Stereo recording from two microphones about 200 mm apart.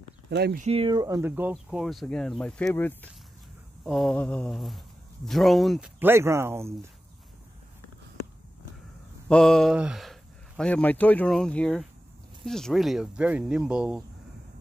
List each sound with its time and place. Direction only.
0.3 s speech: 55° right (ahead or behind)
0.6 s speech: 30° right (ahead or behind); by 6.9 s 10° right (ahead or behind)
9.3 s speech: centre (ahead or behind)